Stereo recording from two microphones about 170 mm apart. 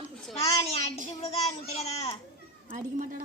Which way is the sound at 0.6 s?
40° left (ahead or behind).